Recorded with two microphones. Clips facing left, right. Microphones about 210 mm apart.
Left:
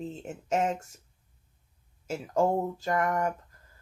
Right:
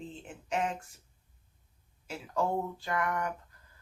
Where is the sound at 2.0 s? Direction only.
45° left (ahead or behind).